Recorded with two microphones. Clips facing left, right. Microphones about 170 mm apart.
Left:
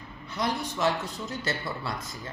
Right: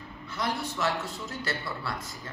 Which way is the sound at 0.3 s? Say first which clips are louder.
Left 2 dB; 20° left (ahead or behind).